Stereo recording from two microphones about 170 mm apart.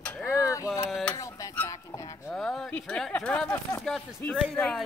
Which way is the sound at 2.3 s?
Centre (ahead or behind).